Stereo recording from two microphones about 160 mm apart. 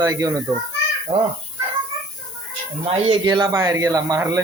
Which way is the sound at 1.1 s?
35° right (ahead or behind).